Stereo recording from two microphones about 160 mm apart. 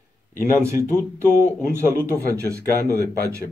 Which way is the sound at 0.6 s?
15° right (ahead or behind).